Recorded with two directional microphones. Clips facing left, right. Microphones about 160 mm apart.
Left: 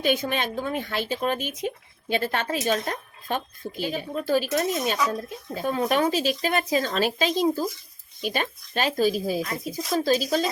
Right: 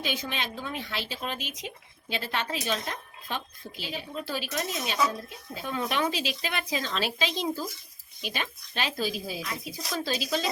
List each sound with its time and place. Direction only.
0.0 s speech: 50° left (ahead or behind)